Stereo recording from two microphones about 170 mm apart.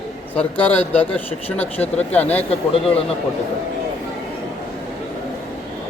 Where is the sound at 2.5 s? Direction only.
35° left (ahead or behind).